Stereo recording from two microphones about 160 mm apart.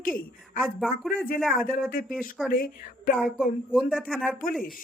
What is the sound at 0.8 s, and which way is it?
Speech, centre (ahead or behind).